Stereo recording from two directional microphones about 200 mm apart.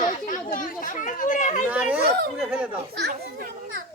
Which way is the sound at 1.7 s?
5° right (ahead or behind).